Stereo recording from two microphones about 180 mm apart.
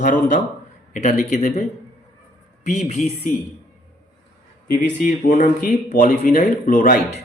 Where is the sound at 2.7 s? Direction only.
40° left (ahead or behind).